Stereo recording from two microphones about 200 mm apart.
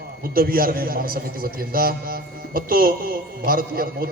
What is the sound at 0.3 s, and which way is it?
A man's voice, 45° right (ahead or behind).